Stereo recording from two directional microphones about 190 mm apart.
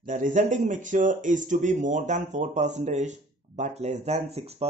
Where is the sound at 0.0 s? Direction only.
40° right (ahead or behind).